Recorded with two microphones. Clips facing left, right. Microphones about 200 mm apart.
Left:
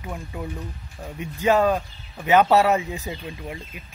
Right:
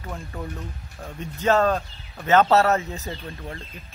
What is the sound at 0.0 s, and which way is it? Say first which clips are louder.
A man's voice: left 1 dB; 10° left (ahead or behind).